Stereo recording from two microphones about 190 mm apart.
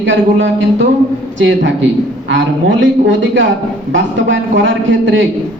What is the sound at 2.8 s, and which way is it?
Speech, 80° right.